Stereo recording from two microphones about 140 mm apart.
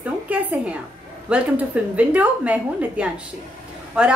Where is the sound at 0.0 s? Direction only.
10° right (ahead or behind).